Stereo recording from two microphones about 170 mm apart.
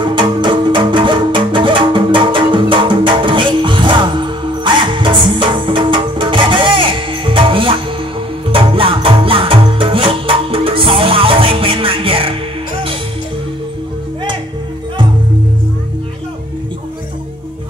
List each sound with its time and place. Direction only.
0.0 s music: 25° right (ahead or behind)